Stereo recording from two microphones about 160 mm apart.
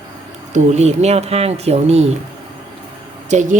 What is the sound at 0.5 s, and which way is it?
Speech, 45° right (ahead or behind).